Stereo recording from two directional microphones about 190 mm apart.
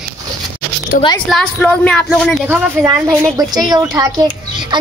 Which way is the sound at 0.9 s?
45° left (ahead or behind).